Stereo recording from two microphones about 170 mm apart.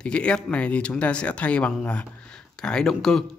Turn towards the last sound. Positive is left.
turn(degrees=0)  # may be behind; listen again after turning